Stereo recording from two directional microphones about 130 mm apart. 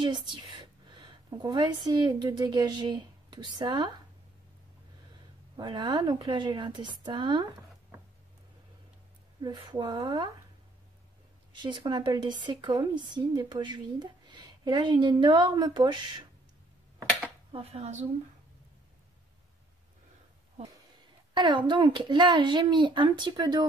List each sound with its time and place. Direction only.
0.0 s a woman's voice: 35° right (ahead or behind)
0.9 s a sound: 35° right (ahead or behind)
1.9 s a woman's voice: 30° right (ahead or behind)
5.6 s a woman's voice: 35° right (ahead or behind)
9.4 s a woman's voice: 35° right (ahead or behind)
11.6 s a woman's voice: 35° right (ahead or behind)
17.5 s speech: 45° right (ahead or behind)
21.3 s a woman's voice: 40° right (ahead or behind)